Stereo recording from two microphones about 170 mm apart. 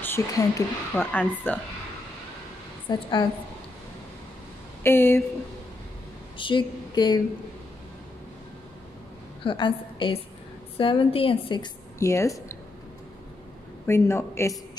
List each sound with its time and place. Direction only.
0.0 s a woman's voice: 15° left (ahead or behind)
2.9 s a woman's voice: 25° left (ahead or behind)
4.8 s a woman's voice: 15° left (ahead or behind)
6.3 s a woman's voice: 30° left (ahead or behind)
9.4 s a woman's voice: 30° left (ahead or behind)
13.8 s a woman's voice: 15° left (ahead or behind)